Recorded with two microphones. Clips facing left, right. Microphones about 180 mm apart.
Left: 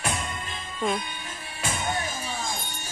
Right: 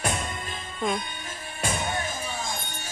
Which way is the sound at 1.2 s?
40° right (ahead or behind).